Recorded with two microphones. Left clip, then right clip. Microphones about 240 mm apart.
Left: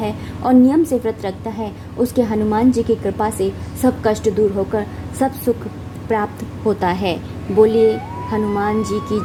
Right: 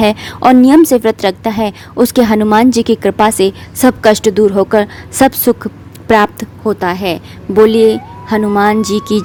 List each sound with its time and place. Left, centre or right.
0.0 s a woman's voice: right
6.7 s a woman's voice: right